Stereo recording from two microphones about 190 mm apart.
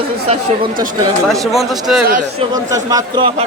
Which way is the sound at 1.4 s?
Centre (ahead or behind).